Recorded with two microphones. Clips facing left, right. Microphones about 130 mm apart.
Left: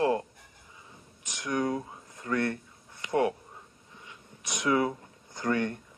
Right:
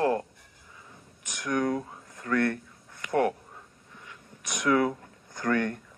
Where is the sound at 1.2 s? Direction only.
50° right (ahead or behind).